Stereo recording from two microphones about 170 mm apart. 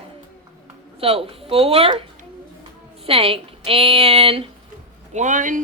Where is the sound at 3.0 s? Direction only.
35° right (ahead or behind).